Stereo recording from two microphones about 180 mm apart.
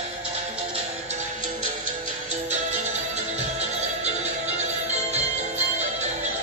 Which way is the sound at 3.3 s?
35° right (ahead or behind).